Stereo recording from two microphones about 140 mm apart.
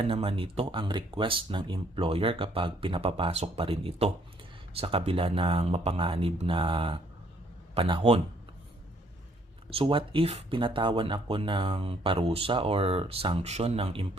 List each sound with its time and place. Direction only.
0.0 s speech: 40° right (ahead or behind)
9.6 s speech: 40° right (ahead or behind)